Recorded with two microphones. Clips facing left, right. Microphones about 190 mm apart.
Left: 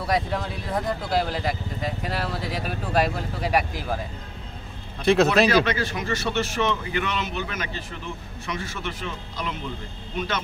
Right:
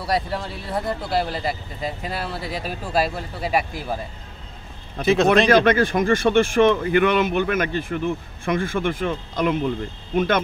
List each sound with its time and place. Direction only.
0.0 s speech: 5° right (ahead or behind)
5.0 s speech: centre (ahead or behind)
5.5 s speech: 50° right (ahead or behind)